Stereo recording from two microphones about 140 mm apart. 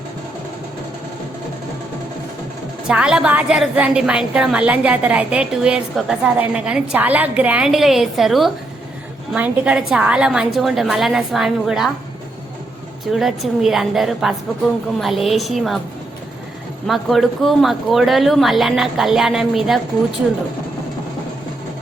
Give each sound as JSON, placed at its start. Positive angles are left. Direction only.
{"t": 2.8, "sound": "a woman's voice", "side_deg": -5}
{"t": 13.1, "sound": "speech", "side_deg": 0}
{"t": 16.8, "sound": "speech", "side_deg": 0}